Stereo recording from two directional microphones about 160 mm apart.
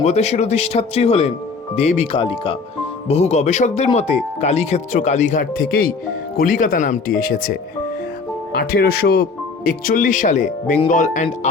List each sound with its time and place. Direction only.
0.0 s speech: 45° left (ahead or behind)
7.2 s speech: 65° left (ahead or behind)
8.5 s speech: 70° left (ahead or behind)
9.6 s speech: 60° left (ahead or behind)